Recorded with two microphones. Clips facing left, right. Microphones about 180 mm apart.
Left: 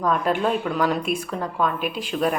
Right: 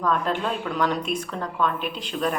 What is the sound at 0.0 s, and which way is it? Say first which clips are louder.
A woman's voice: left 3 dB; 10° left (ahead or behind).